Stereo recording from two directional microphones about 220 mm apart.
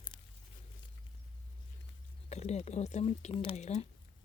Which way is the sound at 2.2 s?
30° left (ahead or behind).